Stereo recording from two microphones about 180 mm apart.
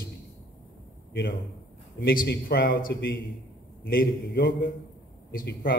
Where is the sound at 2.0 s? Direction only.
55° left (ahead or behind).